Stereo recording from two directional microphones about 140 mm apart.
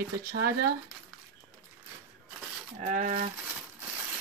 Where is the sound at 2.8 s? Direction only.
65° right (ahead or behind).